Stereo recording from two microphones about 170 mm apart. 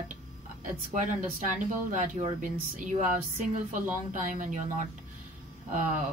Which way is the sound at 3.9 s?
50° right (ahead or behind).